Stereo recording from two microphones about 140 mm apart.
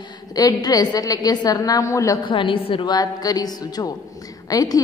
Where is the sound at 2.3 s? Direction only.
40° left (ahead or behind).